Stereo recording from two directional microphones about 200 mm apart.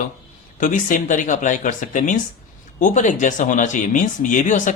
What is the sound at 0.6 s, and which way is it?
Speech, 40° left (ahead or behind).